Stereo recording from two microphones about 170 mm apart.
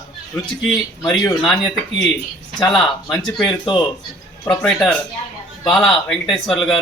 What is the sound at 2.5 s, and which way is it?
Speech, 5° left (ahead or behind).